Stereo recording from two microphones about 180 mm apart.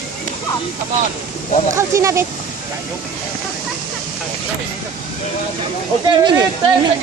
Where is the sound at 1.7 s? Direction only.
15° right (ahead or behind).